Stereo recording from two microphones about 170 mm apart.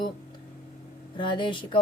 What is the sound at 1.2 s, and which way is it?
Speech, 30° left (ahead or behind).